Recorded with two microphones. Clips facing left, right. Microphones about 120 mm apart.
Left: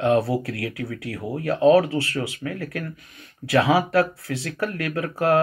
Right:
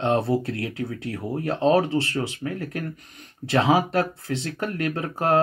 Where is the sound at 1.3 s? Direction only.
25° right (ahead or behind).